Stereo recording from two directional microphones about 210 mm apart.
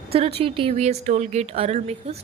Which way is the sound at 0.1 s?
30° right (ahead or behind).